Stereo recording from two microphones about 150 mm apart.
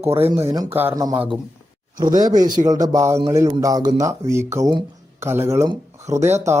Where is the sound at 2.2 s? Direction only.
25° right (ahead or behind).